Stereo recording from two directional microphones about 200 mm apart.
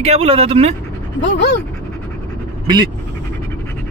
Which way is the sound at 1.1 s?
65° left (ahead or behind).